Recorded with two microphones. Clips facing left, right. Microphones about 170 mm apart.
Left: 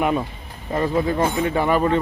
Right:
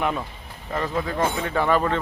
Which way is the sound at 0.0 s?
15° left (ahead or behind).